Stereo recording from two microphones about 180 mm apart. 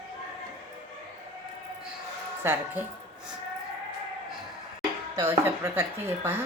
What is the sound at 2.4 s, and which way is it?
Speech, 10° right (ahead or behind).